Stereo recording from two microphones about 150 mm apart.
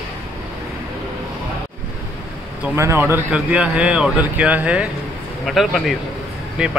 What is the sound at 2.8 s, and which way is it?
A man's voice, 15° right (ahead or behind).